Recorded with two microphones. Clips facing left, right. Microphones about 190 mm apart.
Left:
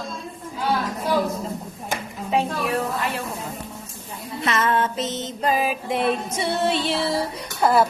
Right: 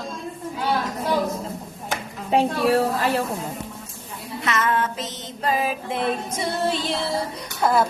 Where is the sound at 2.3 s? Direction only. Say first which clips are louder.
Right 4 dB; 35° right (ahead or behind).